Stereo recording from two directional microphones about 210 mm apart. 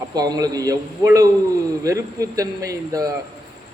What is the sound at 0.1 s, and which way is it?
A man's voice, 20° right (ahead or behind).